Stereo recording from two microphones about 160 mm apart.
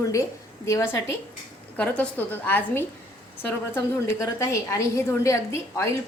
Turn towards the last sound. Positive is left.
turn(degrees=15)  # may be behind; listen again after turning